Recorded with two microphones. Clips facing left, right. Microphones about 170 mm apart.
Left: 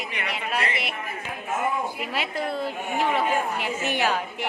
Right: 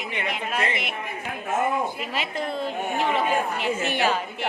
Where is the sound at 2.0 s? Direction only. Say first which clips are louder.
Even; 10° left (ahead or behind).